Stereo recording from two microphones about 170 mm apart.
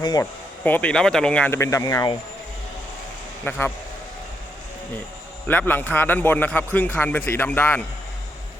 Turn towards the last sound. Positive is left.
turn(degrees=10)  # may be behind; listen again after turning